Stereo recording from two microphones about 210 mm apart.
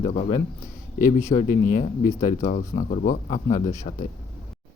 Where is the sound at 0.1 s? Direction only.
35° left (ahead or behind).